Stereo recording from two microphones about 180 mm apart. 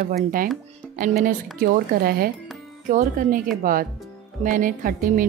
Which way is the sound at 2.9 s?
45° right (ahead or behind).